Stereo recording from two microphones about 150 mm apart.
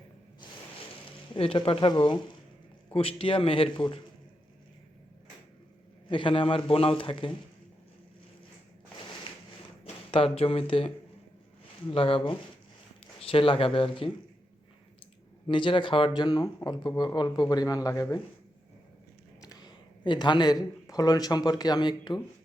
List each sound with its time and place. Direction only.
1.4 s a man's voice: 35° left (ahead or behind)
6.1 s a man's voice: 35° left (ahead or behind)
9.8 s a man's voice: 40° left (ahead or behind)
15.4 s speech: 35° left (ahead or behind)
19.4 s speech: 25° left (ahead or behind)